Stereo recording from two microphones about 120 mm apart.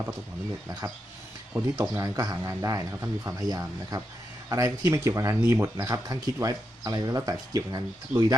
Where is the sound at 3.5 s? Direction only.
30° right (ahead or behind).